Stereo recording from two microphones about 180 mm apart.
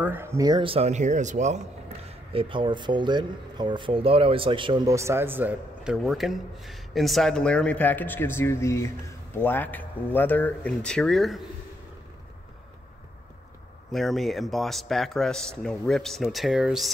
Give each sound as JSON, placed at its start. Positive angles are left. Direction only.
{"t": 0.0, "sound": "speech", "side_deg": -10}
{"t": 2.0, "sound": "speech", "side_deg": -30}
{"t": 13.9, "sound": "speech", "side_deg": 0}